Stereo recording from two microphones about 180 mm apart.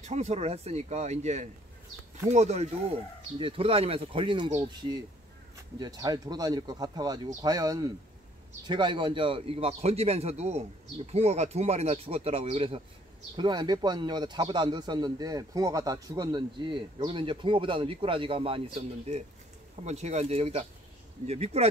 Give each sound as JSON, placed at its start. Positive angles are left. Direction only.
{"t": 0.0, "sound": "a man's voice", "side_deg": -40}